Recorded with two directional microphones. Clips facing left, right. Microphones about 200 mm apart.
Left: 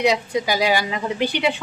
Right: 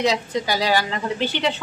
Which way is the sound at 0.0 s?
15° left (ahead or behind).